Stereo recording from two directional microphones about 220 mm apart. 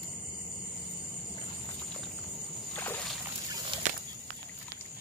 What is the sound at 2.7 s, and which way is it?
Rowboat, 10° left (ahead or behind).